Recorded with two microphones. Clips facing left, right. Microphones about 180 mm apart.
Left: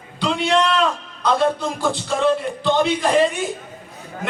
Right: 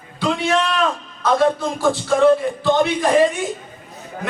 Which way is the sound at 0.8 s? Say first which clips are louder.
Right 1 dB; centre (ahead or behind).